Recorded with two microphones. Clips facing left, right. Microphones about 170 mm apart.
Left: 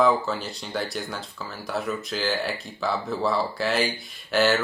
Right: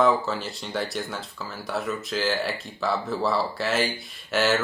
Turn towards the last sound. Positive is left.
turn(degrees=0)  # may be behind; listen again after turning